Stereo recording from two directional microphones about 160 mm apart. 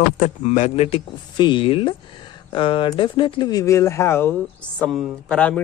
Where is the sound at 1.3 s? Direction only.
30° left (ahead or behind).